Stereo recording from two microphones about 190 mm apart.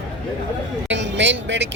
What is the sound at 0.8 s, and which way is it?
Speech, 70° right (ahead or behind).